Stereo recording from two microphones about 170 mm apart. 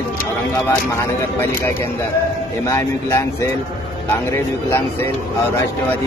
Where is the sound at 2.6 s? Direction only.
15° left (ahead or behind).